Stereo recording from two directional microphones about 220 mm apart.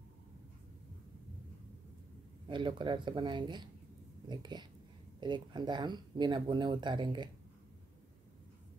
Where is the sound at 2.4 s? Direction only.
20° right (ahead or behind).